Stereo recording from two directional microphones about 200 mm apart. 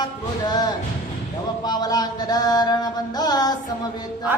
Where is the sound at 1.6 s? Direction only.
20° left (ahead or behind).